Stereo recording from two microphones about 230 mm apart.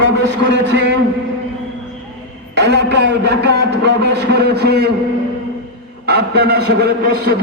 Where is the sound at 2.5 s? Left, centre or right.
Right.